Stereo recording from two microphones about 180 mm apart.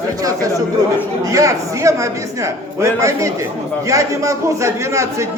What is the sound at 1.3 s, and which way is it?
A man's voice, 20° right (ahead or behind).